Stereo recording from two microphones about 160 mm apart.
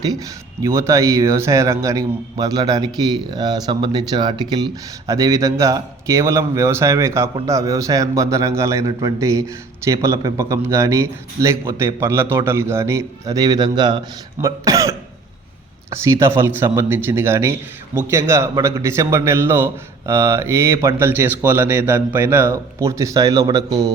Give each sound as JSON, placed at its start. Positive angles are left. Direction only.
{"t": 0.0, "sound": "a man's voice", "side_deg": -20}